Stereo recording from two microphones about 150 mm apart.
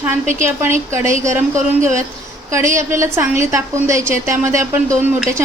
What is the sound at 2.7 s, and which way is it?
A woman's voice, 20° right (ahead or behind).